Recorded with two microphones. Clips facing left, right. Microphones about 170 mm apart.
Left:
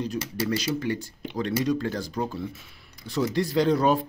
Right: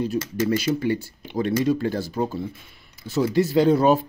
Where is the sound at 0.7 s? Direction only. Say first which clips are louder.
Right 5 dB; 15° right (ahead or behind).